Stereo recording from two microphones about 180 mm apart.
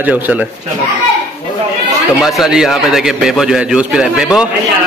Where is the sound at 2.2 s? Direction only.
Centre (ahead or behind).